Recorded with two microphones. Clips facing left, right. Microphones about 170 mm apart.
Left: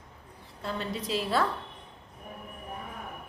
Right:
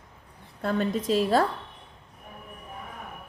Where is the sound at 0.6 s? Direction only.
50° right (ahead or behind).